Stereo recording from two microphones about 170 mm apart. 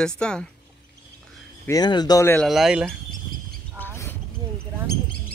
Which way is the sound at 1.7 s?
25° left (ahead or behind).